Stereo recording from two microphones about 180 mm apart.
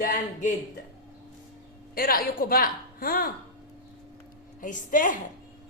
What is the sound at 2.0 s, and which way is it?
A woman's voice, 55° left (ahead or behind).